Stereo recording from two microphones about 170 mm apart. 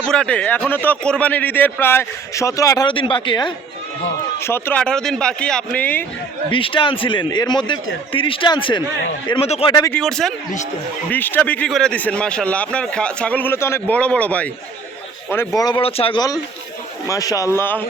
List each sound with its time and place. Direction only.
0.1 s speech: 5° left (ahead or behind); by 3.5 s 30° left (ahead or behind)
4.4 s speech: 15° left (ahead or behind)
6.5 s a man's voice: 30° left (ahead or behind)
9.9 s a man's voice: 5° left (ahead or behind); by 16.2 s 35° left (ahead or behind)
17.1 s speech: 20° left (ahead or behind)